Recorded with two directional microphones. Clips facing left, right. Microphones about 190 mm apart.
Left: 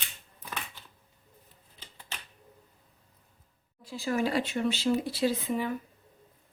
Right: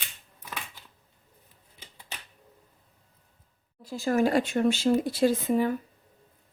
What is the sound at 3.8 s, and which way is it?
Speech, 45° right (ahead or behind).